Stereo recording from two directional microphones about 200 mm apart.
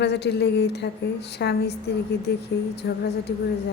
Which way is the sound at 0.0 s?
55° left (ahead or behind).